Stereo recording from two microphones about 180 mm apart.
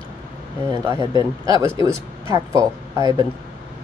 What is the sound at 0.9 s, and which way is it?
Speech, 20° right (ahead or behind).